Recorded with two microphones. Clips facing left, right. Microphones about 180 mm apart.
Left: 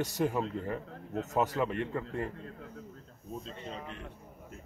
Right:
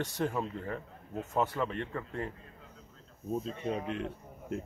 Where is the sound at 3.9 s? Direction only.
70° right (ahead or behind).